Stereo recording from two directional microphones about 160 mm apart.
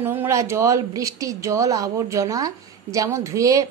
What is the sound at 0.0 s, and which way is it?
Speech, 15° right (ahead or behind).